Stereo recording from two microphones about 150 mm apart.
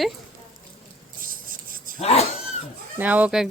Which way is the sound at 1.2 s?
70° right (ahead or behind).